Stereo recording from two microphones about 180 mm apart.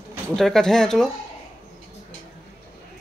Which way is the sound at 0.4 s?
Centre (ahead or behind).